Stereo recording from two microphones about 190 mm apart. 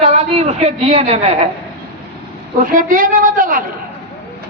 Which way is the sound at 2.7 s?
45° right (ahead or behind).